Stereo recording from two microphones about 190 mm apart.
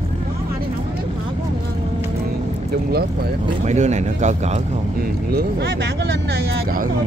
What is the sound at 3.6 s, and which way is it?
Speech, 35° right (ahead or behind).